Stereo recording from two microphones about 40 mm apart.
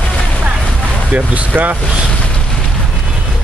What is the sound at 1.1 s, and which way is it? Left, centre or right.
Speech, right.